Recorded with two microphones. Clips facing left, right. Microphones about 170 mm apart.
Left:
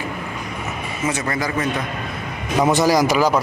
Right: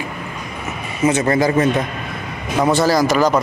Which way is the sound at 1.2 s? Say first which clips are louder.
Right 8 dB; 25° right (ahead or behind).